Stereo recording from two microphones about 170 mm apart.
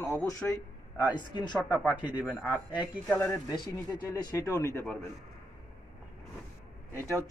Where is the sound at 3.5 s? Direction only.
20° left (ahead or behind).